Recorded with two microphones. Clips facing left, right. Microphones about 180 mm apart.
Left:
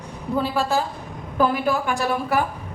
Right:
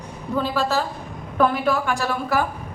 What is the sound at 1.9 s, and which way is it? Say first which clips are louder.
Speech: left 1 dB; 15° left (ahead or behind).